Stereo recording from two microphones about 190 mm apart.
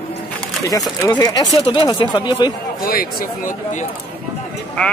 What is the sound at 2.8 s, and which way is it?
Speech, 50° left (ahead or behind).